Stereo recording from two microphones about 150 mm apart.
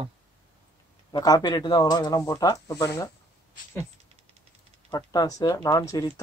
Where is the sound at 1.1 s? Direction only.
25° left (ahead or behind).